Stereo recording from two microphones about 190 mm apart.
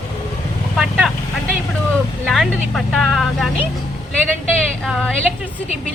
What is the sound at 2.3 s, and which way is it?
A woman's voice, centre (ahead or behind).